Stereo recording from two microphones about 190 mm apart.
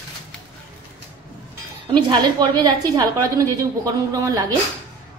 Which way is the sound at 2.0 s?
25° right (ahead or behind).